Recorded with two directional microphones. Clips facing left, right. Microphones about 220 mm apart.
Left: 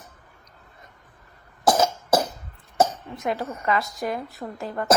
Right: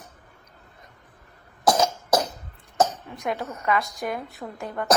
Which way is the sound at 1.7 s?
5° left (ahead or behind).